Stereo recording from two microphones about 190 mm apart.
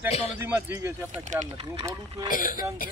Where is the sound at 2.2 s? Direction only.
45° left (ahead or behind).